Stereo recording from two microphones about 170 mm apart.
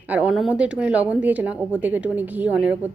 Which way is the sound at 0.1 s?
5° right (ahead or behind).